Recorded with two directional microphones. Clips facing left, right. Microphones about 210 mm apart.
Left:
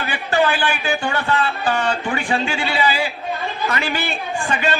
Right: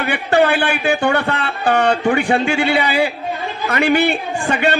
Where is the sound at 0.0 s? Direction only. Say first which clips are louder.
Right 4 dB; 60° right (ahead or behind).